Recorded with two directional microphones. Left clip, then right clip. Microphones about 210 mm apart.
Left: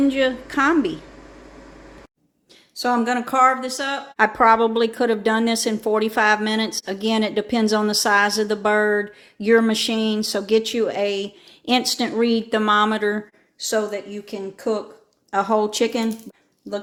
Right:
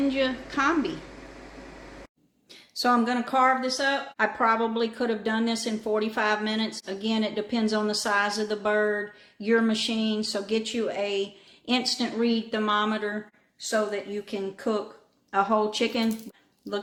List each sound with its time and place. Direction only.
0.1 s a woman's voice: 40° left (ahead or behind)
2.7 s speech: 15° left (ahead or behind)
3.0 s speech: 30° left (ahead or behind)
4.2 s a woman's voice: 50° left (ahead or behind)
14.3 s speech: 20° left (ahead or behind)
15.3 s a woman's voice: 35° left (ahead or behind)